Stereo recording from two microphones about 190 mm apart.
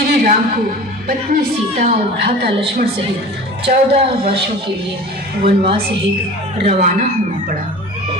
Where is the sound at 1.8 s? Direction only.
35° right (ahead or behind).